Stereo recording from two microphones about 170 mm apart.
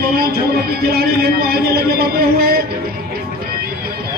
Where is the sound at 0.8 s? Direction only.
65° right (ahead or behind).